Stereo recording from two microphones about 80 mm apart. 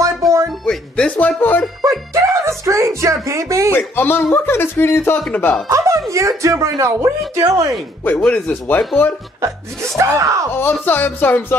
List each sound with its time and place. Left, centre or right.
0.2 s music: centre
0.7 s speech: centre
1.9 s music: right
3.7 s speech: left
5.7 s speech: right
8.0 s speech: left
9.4 s speech: right
10.5 s speech: left